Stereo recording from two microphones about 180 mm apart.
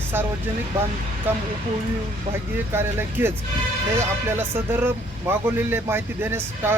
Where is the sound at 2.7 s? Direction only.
15° right (ahead or behind).